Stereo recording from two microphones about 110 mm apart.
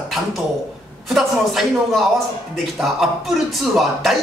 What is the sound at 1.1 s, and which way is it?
Speech, centre (ahead or behind).